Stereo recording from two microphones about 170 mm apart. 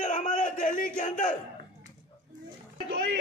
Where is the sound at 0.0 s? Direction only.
45° left (ahead or behind).